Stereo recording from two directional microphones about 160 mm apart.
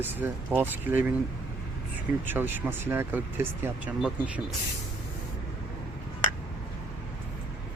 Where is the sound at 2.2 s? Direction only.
10° right (ahead or behind).